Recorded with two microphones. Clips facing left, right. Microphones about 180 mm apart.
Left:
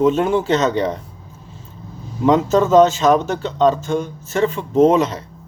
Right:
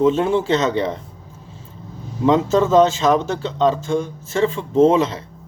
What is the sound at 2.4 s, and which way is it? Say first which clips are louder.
Speech: left 3 dB; 25° right (ahead or behind).